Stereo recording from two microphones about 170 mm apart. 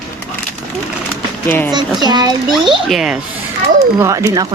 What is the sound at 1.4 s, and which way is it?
Speech, 10° left (ahead or behind).